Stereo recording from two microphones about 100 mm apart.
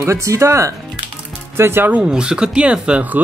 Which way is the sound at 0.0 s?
30° right (ahead or behind).